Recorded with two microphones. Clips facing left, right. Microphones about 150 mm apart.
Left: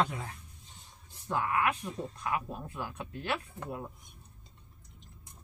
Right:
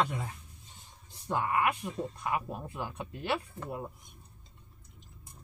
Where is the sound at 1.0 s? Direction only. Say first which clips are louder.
Right 1 dB; 15° right (ahead or behind).